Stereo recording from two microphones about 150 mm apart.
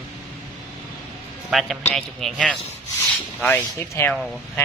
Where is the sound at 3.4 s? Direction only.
15° left (ahead or behind).